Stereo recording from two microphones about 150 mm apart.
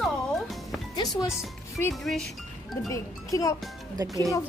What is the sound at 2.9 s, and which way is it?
Speech, 20° left (ahead or behind).